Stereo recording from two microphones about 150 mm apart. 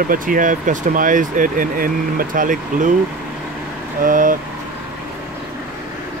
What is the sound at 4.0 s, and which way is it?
Speech, 60° right (ahead or behind).